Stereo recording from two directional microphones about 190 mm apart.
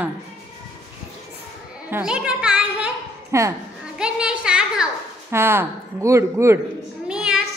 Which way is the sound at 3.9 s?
5° right (ahead or behind).